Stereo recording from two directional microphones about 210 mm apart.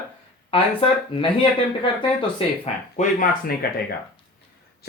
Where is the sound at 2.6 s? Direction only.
35° left (ahead or behind).